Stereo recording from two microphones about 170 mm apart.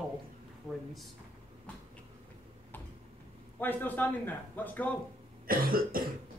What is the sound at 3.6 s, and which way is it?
A man's voice, 10° left (ahead or behind).